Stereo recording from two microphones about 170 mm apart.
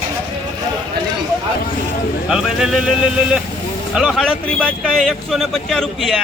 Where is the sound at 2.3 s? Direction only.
5° right (ahead or behind).